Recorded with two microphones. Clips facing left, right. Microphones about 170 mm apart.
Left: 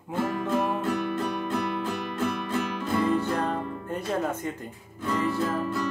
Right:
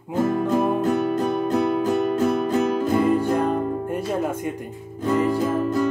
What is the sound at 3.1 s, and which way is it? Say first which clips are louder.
Music: right 6 dB; 10° right (ahead or behind).